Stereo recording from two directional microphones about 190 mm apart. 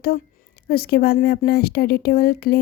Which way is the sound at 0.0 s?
55° left (ahead or behind).